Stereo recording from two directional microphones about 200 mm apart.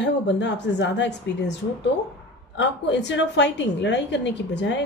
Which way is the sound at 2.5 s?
65° left (ahead or behind).